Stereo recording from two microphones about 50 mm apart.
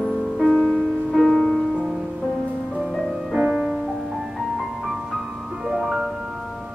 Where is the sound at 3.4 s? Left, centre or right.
Centre.